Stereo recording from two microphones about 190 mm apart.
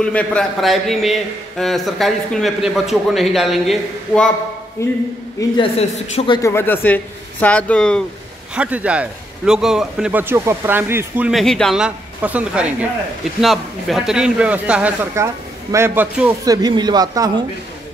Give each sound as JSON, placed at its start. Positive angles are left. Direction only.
{"t": 0.0, "sound": "a man's voice", "side_deg": 5}
{"t": 4.8, "sound": "speech", "side_deg": 15}
{"t": 5.6, "sound": "a man's voice", "side_deg": 30}
{"t": 6.5, "sound": "speech", "side_deg": 10}
{"t": 8.5, "sound": "a man's voice", "side_deg": -5}